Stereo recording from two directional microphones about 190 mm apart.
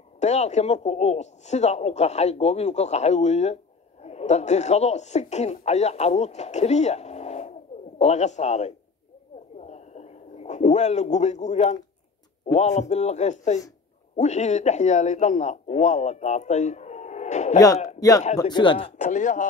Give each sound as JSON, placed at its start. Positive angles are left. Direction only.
{"t": 0.2, "sound": "speech", "side_deg": 35}
{"t": 9.6, "sound": "a sound", "side_deg": 35}
{"t": 12.5, "sound": "speech", "side_deg": 40}
{"t": 17.8, "sound": "speech", "side_deg": 20}
{"t": 19.0, "sound": "speech", "side_deg": 40}